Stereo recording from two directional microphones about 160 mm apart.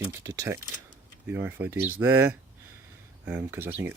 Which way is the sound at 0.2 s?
15° right (ahead or behind).